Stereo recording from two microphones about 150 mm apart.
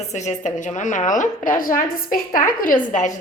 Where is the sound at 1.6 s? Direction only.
70° left (ahead or behind).